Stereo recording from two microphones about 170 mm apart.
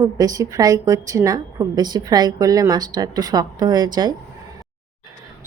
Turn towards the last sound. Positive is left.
turn(degrees=-25)  # may be behind; listen again after turning